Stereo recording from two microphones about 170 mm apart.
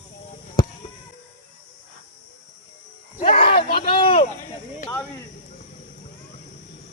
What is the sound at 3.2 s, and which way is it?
Cricket, 35° left (ahead or behind).